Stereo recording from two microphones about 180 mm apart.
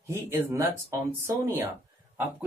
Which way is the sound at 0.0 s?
15° right (ahead or behind).